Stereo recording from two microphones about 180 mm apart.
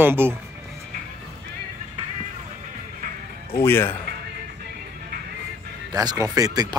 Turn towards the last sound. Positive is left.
turn(degrees=-20)  # may be behind; listen again after turning